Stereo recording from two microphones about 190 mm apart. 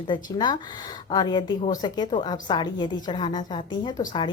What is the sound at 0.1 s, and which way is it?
A woman's voice, 25° left (ahead or behind).